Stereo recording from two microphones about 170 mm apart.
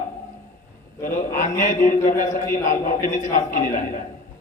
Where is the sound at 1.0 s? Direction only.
50° left (ahead or behind).